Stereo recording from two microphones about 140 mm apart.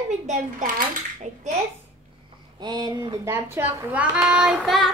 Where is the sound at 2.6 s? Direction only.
30° right (ahead or behind).